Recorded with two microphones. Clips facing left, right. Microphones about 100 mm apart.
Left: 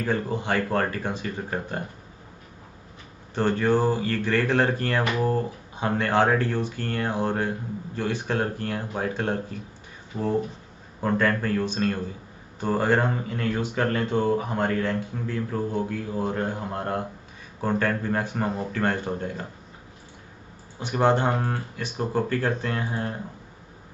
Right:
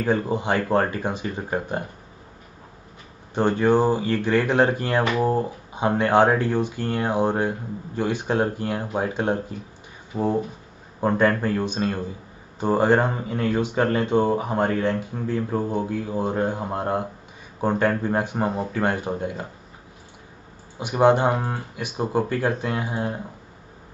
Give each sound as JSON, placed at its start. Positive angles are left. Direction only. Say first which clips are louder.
{"t": 0.0, "sound": "speech", "louder": "right 4 dB", "side_deg": -15}
{"t": 3.3, "sound": "speech", "louder": "right 3 dB", "side_deg": -15}
{"t": 20.8, "sound": "speech", "louder": "right 4 dB", "side_deg": -15}